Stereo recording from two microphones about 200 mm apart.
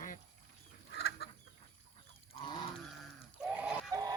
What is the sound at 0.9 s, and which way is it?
Chicken, 60° left (ahead or behind).